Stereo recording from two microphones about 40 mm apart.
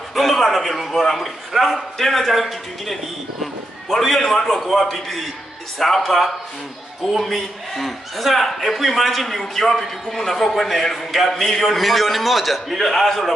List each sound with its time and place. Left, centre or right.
0.1 s a man's voice: centre